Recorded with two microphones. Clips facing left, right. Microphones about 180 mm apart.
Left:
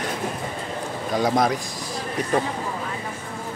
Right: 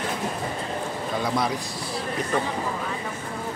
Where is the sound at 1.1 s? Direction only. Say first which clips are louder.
Left 6 dB; 45° left (ahead or behind).